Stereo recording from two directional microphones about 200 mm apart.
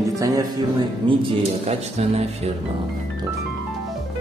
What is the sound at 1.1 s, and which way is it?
Speech, 30° right (ahead or behind).